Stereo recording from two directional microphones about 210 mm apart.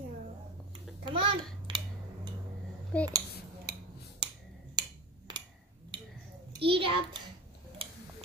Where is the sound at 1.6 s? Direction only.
20° right (ahead or behind).